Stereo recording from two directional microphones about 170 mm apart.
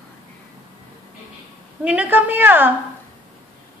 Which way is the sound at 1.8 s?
10° right (ahead or behind).